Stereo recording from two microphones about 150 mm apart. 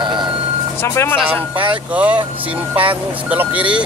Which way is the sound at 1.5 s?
10° right (ahead or behind).